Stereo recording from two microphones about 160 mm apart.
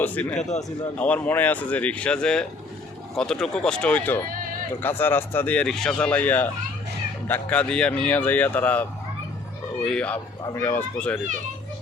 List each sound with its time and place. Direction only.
0.0 s speech: 10° left (ahead or behind)
0.3 s a man's voice: 45° left (ahead or behind)
0.9 s speech: 10° left (ahead or behind)
10.4 s speech: 20° left (ahead or behind)